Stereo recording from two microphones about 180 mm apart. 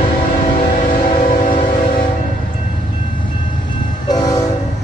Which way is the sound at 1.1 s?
40° left (ahead or behind).